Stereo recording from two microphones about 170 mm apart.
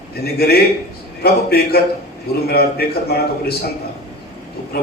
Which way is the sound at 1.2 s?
65° left (ahead or behind).